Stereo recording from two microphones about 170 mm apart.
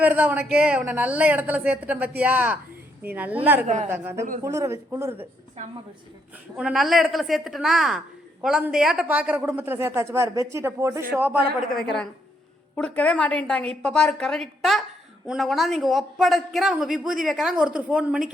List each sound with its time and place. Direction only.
0.0 s speech: 10° right (ahead or behind)
6.6 s a woman's voice: centre (ahead or behind)
12.7 s a woman's voice: 5° left (ahead or behind)